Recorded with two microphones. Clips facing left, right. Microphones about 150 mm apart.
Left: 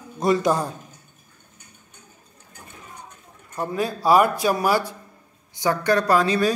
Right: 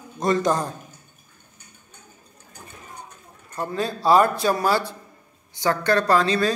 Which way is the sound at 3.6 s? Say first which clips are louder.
Left 1 dB; 10° left (ahead or behind).